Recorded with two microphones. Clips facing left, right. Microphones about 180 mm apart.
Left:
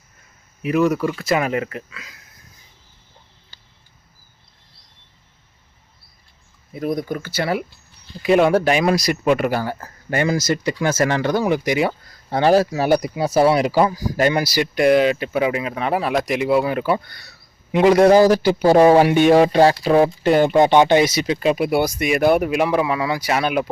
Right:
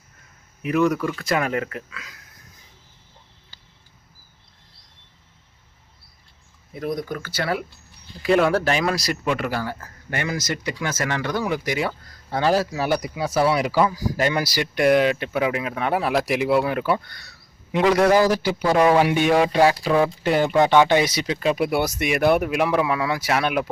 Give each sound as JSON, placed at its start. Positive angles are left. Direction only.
{"t": 0.6, "sound": "speech", "side_deg": 5}
{"t": 6.7, "sound": "speech", "side_deg": 10}
{"t": 13.9, "sound": "speech", "side_deg": 45}
{"t": 14.3, "sound": "speech", "side_deg": 10}
{"t": 14.8, "sound": "speech", "side_deg": 0}
{"t": 17.8, "sound": "speech", "side_deg": 30}